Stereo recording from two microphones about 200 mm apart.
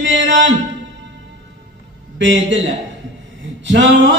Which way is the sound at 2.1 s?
70° right (ahead or behind).